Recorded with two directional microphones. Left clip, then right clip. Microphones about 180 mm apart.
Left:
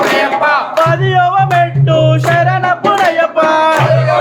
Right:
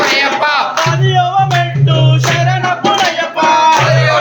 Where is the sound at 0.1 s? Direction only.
Centre (ahead or behind).